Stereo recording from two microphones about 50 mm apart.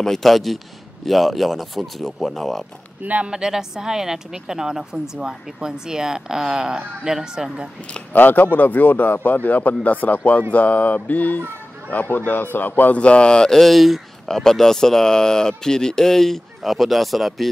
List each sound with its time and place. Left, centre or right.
0.0 s speech: centre
3.0 s speech: right
3.3 s a woman's voice: centre
8.1 s speech: left
12.9 s speech: left
13.6 s speech: centre